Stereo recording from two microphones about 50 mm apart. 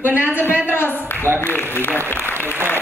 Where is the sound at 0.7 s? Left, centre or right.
Left.